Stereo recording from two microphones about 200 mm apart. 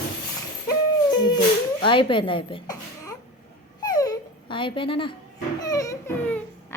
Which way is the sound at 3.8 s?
20° left (ahead or behind).